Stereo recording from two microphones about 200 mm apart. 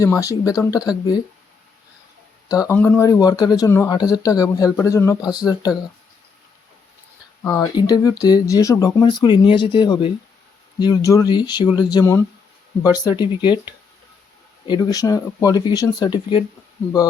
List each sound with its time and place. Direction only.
0.0 s speech: 15° left (ahead or behind)
2.5 s speech: 15° left (ahead or behind)
7.4 s speech: 15° left (ahead or behind)
14.7 s speech: 20° left (ahead or behind)